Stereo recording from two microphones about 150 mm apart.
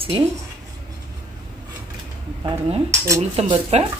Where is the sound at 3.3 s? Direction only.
40° right (ahead or behind).